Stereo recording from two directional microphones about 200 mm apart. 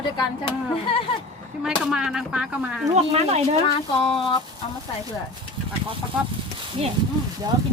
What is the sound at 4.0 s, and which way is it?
Speech, 30° left (ahead or behind).